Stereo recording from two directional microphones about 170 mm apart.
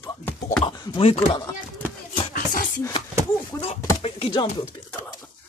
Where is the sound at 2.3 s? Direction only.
55° left (ahead or behind).